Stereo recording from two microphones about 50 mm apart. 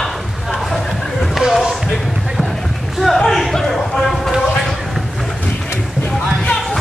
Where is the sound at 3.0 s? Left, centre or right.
Centre.